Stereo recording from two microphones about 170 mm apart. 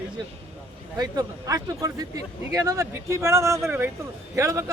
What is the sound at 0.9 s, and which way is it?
A man's voice, 25° right (ahead or behind).